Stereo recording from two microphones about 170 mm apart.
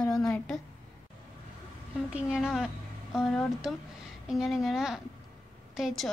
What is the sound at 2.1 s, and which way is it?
A woman's voice, 5° right (ahead or behind).